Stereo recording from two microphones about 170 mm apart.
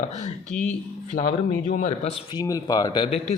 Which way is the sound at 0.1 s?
40° left (ahead or behind).